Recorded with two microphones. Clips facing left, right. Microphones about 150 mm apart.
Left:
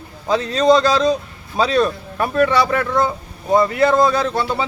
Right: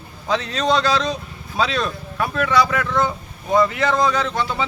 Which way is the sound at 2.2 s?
35° left (ahead or behind).